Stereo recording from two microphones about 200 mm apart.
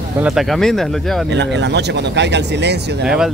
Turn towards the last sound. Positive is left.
turn(degrees=-5)  # may be behind; listen again after turning